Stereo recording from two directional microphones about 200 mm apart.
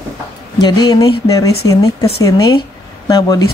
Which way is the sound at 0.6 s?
20° left (ahead or behind).